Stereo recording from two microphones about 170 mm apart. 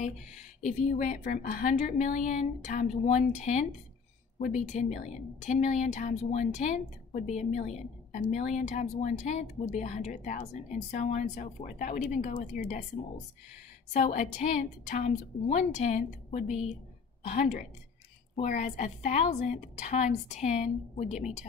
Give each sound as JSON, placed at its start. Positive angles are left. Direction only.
{"t": 0.7, "sound": "speech", "side_deg": 50}
{"t": 13.9, "sound": "speech", "side_deg": 45}